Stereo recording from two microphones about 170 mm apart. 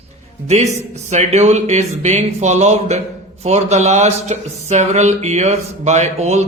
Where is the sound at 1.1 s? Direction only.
40° right (ahead or behind).